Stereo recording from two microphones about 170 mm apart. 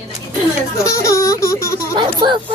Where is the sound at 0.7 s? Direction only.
20° left (ahead or behind).